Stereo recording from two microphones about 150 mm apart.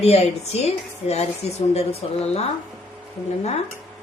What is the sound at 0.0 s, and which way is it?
A woman's voice, 45° left (ahead or behind).